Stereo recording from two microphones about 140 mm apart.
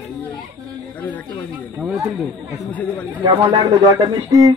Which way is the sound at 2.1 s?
Centre (ahead or behind).